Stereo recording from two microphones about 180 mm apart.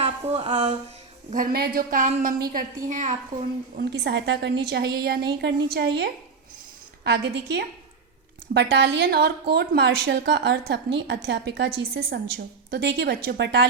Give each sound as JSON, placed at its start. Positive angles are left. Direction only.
{"t": 0.0, "sound": "speech", "side_deg": -35}
{"t": 1.3, "sound": "a woman's voice", "side_deg": -55}
{"t": 3.8, "sound": "a woman's voice", "side_deg": -65}